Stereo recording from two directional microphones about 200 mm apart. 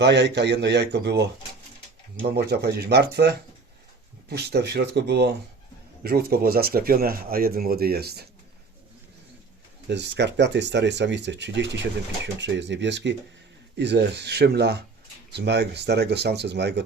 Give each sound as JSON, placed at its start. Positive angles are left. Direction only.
{"t": 0.0, "sound": "speech", "side_deg": -60}
{"t": 9.9, "sound": "speech", "side_deg": -60}